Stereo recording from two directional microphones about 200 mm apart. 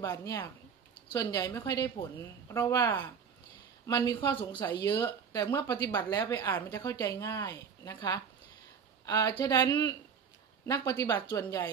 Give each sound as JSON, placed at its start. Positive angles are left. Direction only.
{"t": 0.0, "sound": "a woman's voice", "side_deg": 15}